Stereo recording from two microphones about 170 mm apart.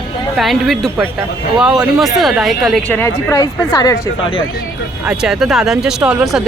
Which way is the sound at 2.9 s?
15° left (ahead or behind).